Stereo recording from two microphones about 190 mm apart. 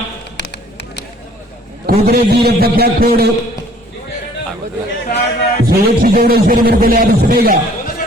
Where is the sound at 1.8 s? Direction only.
55° right (ahead or behind).